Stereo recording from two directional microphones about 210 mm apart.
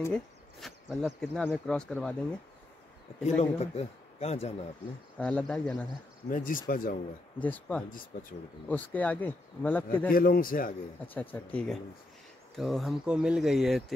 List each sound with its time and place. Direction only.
0.0 s speech: 5° left (ahead or behind)
3.3 s a man's voice: 30° left (ahead or behind)
5.1 s speech: 5° left (ahead or behind)
6.3 s a man's voice: 40° left (ahead or behind)
7.4 s a man's voice: 5° left (ahead or behind)
7.9 s a man's voice: 40° left (ahead or behind)
8.6 s a man's voice: 10° left (ahead or behind)
10.1 s a man's voice: 45° left (ahead or behind)
11.1 s a man's voice: 5° left (ahead or behind)